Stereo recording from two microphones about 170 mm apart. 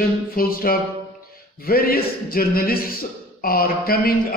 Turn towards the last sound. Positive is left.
turn(degrees=60)  # may be behind; listen again after turning